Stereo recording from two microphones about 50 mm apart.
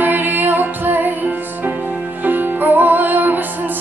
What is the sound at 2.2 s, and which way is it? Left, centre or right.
Music, right.